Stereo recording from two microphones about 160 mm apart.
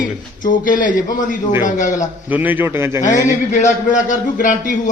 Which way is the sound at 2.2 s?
10° right (ahead or behind).